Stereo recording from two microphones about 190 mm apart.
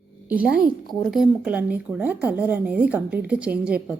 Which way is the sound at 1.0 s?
Centre (ahead or behind).